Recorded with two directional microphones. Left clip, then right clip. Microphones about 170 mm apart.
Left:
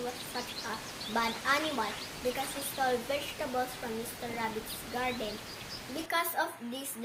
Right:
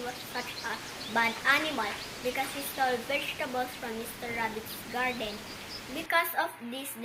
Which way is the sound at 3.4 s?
10° left (ahead or behind).